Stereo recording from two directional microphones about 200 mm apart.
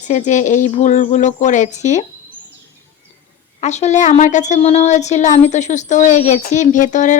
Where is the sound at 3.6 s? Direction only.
35° left (ahead or behind).